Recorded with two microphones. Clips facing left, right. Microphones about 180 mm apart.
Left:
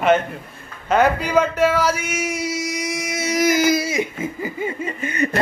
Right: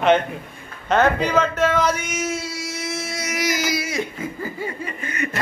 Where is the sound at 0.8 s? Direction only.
10° left (ahead or behind).